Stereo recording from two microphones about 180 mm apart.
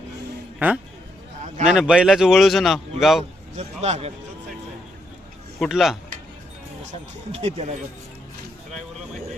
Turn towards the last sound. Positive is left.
turn(degrees=-35)  # may be behind; listen again after turning